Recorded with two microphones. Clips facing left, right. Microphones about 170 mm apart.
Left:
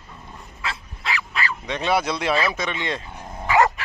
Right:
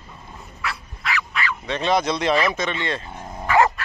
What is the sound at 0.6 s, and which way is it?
Dog, 25° left (ahead or behind).